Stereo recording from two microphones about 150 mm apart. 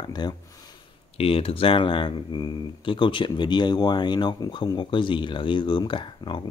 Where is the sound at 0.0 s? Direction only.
30° left (ahead or behind).